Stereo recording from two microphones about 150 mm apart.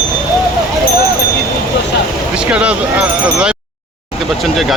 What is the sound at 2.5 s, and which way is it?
Speech, 10° right (ahead or behind).